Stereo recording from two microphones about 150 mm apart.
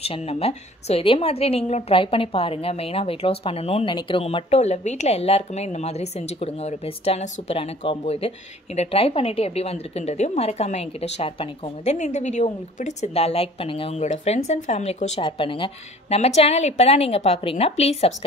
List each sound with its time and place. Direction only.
0.0 s a woman's voice: 40° left (ahead or behind)
15.2 s a woman's voice: 35° left (ahead or behind)